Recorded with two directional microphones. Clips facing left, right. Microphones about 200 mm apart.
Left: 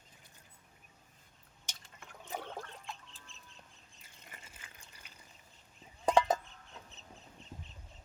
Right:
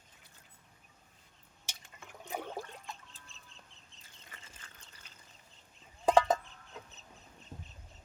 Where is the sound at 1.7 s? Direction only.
10° right (ahead or behind).